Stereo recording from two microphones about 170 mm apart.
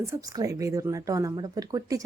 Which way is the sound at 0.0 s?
20° right (ahead or behind).